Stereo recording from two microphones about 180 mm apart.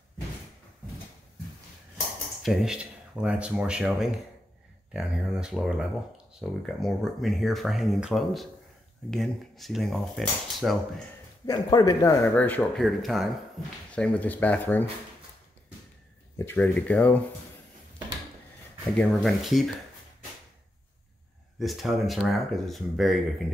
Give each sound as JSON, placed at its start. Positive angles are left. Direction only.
{"t": 2.4, "sound": "speech", "side_deg": 0}
{"t": 11.4, "sound": "speech", "side_deg": 20}
{"t": 12.4, "sound": "speech", "side_deg": 10}
{"t": 16.3, "sound": "speech", "side_deg": 10}
{"t": 18.9, "sound": "speech", "side_deg": 0}
{"t": 21.5, "sound": "speech", "side_deg": 0}